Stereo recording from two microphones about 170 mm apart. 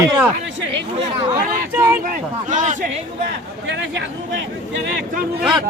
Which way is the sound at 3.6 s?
90° right.